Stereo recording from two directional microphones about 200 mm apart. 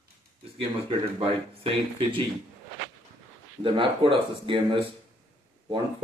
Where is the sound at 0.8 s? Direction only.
25° right (ahead or behind).